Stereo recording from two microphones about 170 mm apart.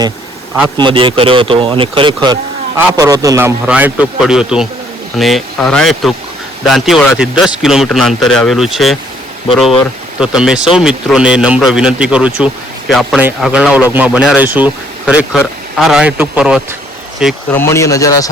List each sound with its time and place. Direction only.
0.8 s speech: 30° right (ahead or behind); by 9.0 s centre (ahead or behind)
10.2 s speech: 5° right (ahead or behind)
17.5 s speech: 15° left (ahead or behind)